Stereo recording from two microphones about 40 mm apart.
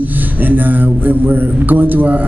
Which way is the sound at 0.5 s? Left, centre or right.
Right.